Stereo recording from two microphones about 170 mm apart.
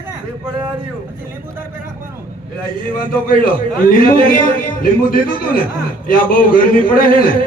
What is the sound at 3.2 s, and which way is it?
Speech, 55° left (ahead or behind).